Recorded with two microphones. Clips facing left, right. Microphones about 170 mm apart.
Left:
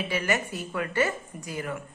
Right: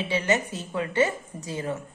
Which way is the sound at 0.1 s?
25° right (ahead or behind).